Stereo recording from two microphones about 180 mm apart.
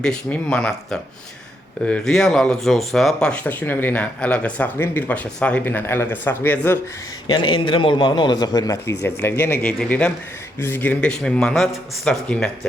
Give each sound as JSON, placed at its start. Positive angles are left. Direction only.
{"t": 0.0, "sound": "speech", "side_deg": 5}
{"t": 7.3, "sound": "a man's voice", "side_deg": 25}